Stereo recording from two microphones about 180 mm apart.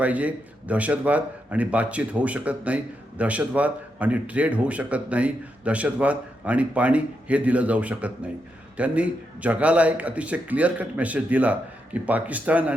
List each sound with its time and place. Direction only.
0.0 s a man's voice: 10° right (ahead or behind)